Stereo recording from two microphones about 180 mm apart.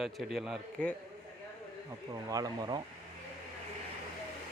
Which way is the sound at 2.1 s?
20° right (ahead or behind).